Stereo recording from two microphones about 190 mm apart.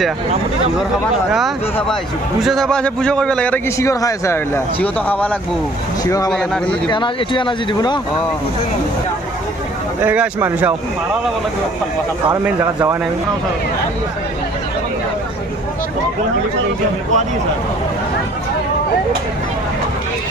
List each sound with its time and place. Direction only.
1.3 s a man's voice: centre (ahead or behind); by 6.3 s 15° left (ahead or behind)
6.3 s speech: 5° left (ahead or behind)
6.9 s speech: 25° left (ahead or behind)
10.0 s speech: 10° right (ahead or behind)
12.5 s speech: 10° right (ahead or behind)